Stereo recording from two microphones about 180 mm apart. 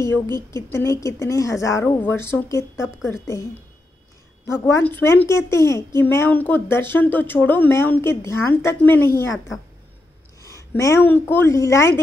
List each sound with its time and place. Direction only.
0.5 s speech: 15° left (ahead or behind)
4.5 s speech: 15° left (ahead or behind)
10.4 s speech: 15° left (ahead or behind)